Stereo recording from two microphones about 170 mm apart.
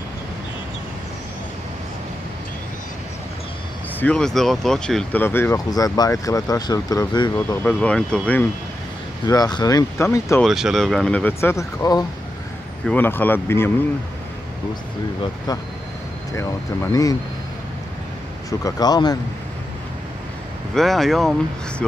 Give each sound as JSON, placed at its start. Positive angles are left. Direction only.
{"t": 4.0, "sound": "speech", "side_deg": 5}
{"t": 7.3, "sound": "speech", "side_deg": 10}
{"t": 9.2, "sound": "speech", "side_deg": 25}
{"t": 10.4, "sound": "speech", "side_deg": 0}
{"t": 16.3, "sound": "speech", "side_deg": 20}
{"t": 18.6, "sound": "speech", "side_deg": 20}
{"t": 20.7, "sound": "speech", "side_deg": 0}